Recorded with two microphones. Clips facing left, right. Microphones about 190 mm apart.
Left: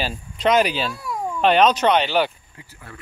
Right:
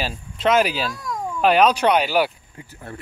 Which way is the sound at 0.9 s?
10° left (ahead or behind).